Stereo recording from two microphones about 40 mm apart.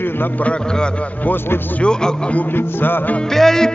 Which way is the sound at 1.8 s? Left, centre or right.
Centre.